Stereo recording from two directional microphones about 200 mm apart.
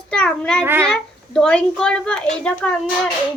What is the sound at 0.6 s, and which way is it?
Child singing, 10° right (ahead or behind).